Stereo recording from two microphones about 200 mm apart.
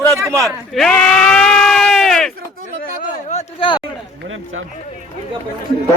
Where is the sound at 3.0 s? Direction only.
35° left (ahead or behind).